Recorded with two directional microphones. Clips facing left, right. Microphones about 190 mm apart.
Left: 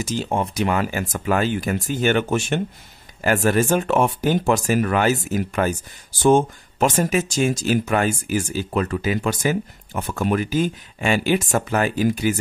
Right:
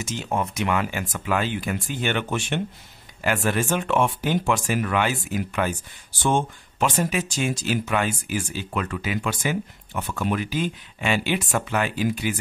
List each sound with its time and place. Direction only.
0.0 s speech: 35° left (ahead or behind)